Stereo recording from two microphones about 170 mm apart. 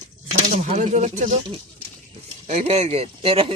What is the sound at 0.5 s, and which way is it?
Speech, 45° right (ahead or behind).